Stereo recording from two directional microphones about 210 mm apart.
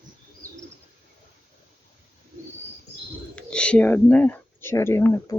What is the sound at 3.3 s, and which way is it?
Speech, 5° left (ahead or behind).